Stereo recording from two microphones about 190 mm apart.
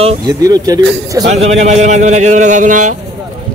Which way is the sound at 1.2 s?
35° right (ahead or behind).